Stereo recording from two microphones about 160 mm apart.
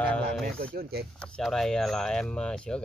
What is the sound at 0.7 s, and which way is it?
Speech, 75° right (ahead or behind).